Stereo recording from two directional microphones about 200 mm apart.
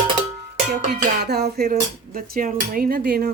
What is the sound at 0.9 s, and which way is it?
Speech, 55° right (ahead or behind).